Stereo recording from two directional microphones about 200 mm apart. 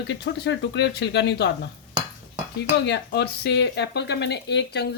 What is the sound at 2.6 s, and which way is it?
Speech, 60° left (ahead or behind).